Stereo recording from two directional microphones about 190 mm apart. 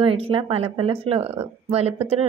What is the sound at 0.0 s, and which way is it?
A woman's voice, 30° right (ahead or behind).